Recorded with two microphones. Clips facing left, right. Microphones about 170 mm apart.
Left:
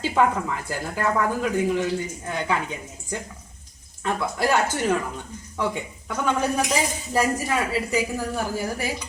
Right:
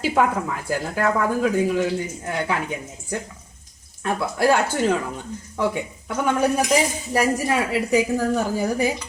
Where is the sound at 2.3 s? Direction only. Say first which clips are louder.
Right 1 dB; 15° right (ahead or behind).